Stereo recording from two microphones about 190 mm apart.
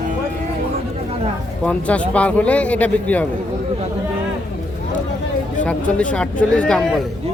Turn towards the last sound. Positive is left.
turn(degrees=5)  # may be behind; listen again after turning